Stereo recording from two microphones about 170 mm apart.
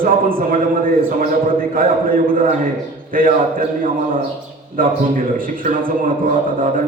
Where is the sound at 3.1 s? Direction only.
55° right (ahead or behind).